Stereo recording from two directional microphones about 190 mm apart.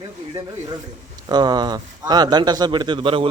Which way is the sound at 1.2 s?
20° right (ahead or behind).